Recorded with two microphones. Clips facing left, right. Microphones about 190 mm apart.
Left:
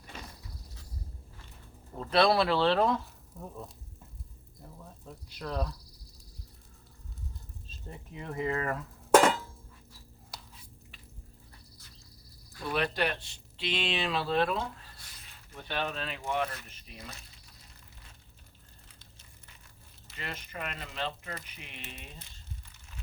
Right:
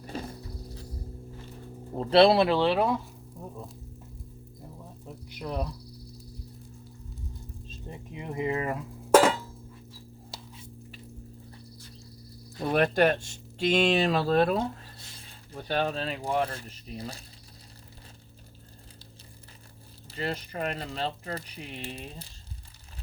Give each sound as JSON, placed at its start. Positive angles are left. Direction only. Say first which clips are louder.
{"t": 0.0, "sound": "a sound", "louder": "right 10 dB", "side_deg": -35}
{"t": 2.0, "sound": "speech", "louder": "right 6 dB", "side_deg": -30}
{"t": 3.3, "sound": "sizzle", "louder": "right 2 dB", "side_deg": 0}
{"t": 5.0, "sound": "speech", "louder": "right 3 dB", "side_deg": -20}
{"t": 7.9, "sound": "a sound", "louder": "right 3 dB", "side_deg": -15}
{"t": 10.3, "sound": "a sound", "louder": "right 3 dB", "side_deg": -25}
{"t": 12.6, "sound": "speech", "louder": "right 8 dB", "side_deg": -50}
{"t": 14.9, "sound": "speech", "louder": "right 6 dB", "side_deg": -30}
{"t": 20.1, "sound": "speech", "louder": "right 9 dB", "side_deg": -35}